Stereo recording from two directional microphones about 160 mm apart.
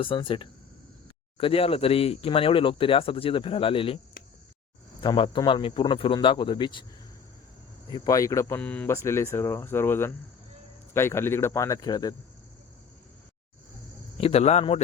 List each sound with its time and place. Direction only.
0.0 s speech: 30° left (ahead or behind)
7.9 s speech: 25° left (ahead or behind)
14.2 s speech: 40° left (ahead or behind)